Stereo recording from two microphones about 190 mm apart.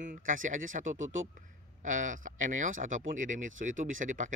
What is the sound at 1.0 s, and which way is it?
Speech, 90° right.